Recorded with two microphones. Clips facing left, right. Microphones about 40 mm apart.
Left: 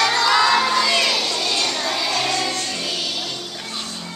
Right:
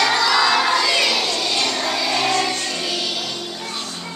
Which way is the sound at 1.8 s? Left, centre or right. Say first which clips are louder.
Right 1 dB; centre.